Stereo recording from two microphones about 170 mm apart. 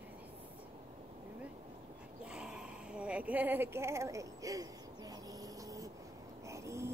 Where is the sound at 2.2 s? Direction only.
5° right (ahead or behind).